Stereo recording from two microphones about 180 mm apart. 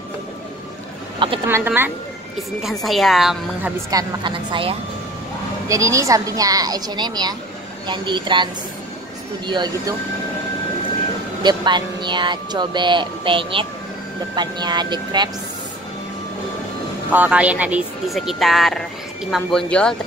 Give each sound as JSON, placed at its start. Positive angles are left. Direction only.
{"t": 1.5, "sound": "speech", "side_deg": -10}
{"t": 2.6, "sound": "speech", "side_deg": 0}
{"t": 3.9, "sound": "speech", "side_deg": -25}
{"t": 5.7, "sound": "speech", "side_deg": -15}
{"t": 9.5, "sound": "speech", "side_deg": -25}
{"t": 11.4, "sound": "speech", "side_deg": -25}
{"t": 17.1, "sound": "speech", "side_deg": -10}